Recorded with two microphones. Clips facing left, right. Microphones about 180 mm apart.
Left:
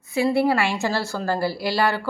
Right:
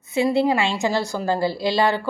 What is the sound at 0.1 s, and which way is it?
Speech, 20° right (ahead or behind).